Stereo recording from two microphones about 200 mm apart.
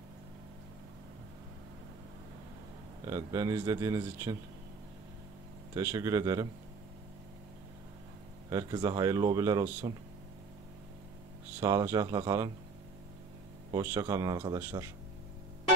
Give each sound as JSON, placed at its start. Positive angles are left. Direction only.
{"t": 3.1, "sound": "speech", "side_deg": -15}
{"t": 5.8, "sound": "speech", "side_deg": -15}
{"t": 8.5, "sound": "speech", "side_deg": -15}
{"t": 11.6, "sound": "speech", "side_deg": -15}
{"t": 13.7, "sound": "speech", "side_deg": -15}